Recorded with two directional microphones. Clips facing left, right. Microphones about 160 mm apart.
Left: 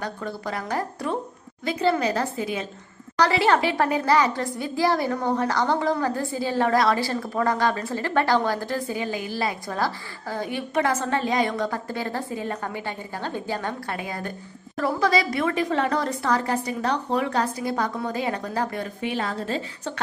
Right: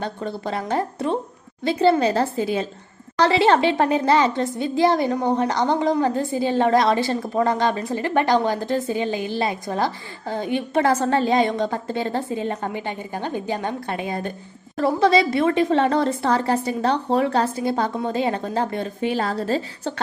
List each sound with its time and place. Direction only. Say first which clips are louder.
0.0 s a woman's voice: right 3 dB; 25° right (ahead or behind)